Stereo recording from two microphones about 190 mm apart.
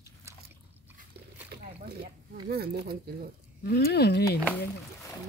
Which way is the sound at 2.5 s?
55° right (ahead or behind).